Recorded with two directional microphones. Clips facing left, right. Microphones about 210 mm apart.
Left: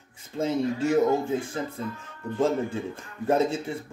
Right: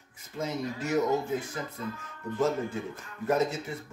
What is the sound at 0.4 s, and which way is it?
Speech, 30° left (ahead or behind).